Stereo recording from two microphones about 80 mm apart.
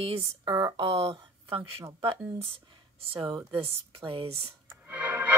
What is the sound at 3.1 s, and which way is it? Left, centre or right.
Speech, right.